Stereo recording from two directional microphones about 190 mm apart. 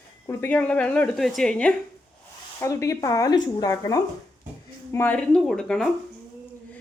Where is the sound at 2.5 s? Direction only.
15° left (ahead or behind).